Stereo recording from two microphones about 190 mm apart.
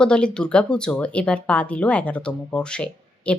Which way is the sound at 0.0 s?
5° left (ahead or behind).